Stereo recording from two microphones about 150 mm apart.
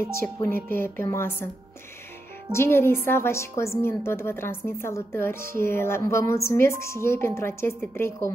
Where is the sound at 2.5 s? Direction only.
15° left (ahead or behind).